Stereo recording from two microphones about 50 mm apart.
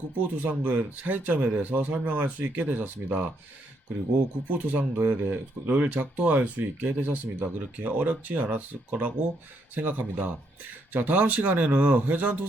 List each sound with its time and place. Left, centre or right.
0.2 s speech: right
4.4 s speech: right